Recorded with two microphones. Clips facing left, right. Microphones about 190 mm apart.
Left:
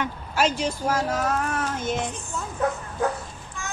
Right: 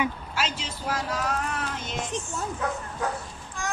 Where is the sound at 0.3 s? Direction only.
50° left (ahead or behind).